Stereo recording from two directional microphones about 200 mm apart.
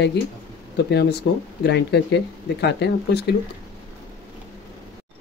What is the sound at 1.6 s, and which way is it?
Speech, 55° left (ahead or behind).